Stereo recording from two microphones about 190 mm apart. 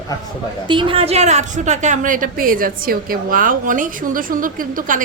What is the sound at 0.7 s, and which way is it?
A woman's voice, 25° right (ahead or behind).